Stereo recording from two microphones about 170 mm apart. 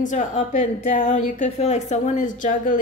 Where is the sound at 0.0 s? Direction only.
45° left (ahead or behind).